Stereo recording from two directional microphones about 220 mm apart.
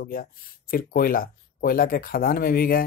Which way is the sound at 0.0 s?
40° left (ahead or behind).